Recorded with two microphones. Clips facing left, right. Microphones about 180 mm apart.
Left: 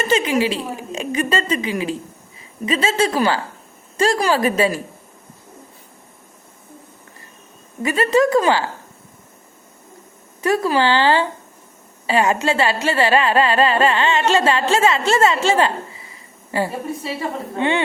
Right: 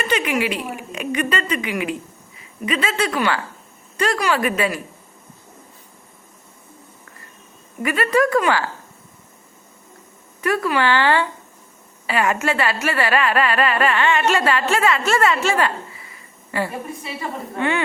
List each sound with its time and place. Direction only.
0.0 s a woman's voice: 30° left (ahead or behind)
7.8 s speech: 25° left (ahead or behind)
10.4 s speech: 30° left (ahead or behind)